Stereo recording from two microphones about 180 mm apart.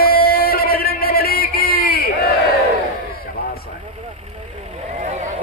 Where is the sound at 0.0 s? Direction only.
55° left (ahead or behind).